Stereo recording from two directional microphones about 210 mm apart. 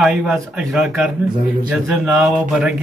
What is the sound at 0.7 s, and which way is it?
Speech, 5° right (ahead or behind).